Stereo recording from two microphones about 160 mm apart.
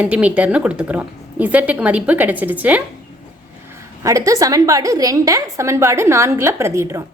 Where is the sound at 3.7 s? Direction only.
20° right (ahead or behind).